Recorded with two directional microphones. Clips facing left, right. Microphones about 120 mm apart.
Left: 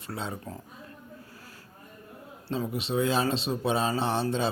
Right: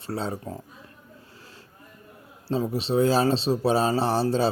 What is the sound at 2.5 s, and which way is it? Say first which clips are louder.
Speech: right 5 dB; 30° right (ahead or behind).